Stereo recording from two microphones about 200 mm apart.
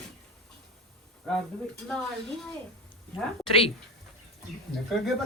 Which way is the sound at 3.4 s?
25° left (ahead or behind).